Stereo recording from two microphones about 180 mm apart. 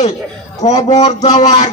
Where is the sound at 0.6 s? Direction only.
40° left (ahead or behind).